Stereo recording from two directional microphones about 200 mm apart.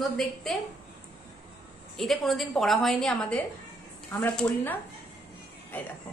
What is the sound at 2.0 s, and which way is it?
A woman's voice, centre (ahead or behind).